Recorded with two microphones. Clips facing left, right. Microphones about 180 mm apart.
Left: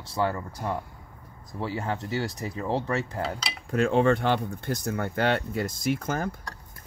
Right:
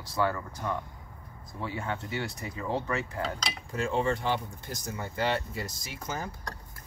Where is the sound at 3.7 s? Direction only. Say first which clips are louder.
Left 7 dB; 60° left (ahead or behind).